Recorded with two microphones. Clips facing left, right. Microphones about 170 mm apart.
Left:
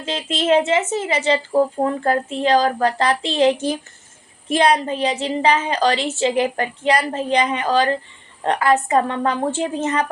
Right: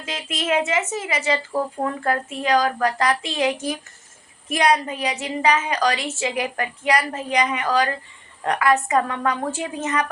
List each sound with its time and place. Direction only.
0.0 s a woman's voice: 30° left (ahead or behind)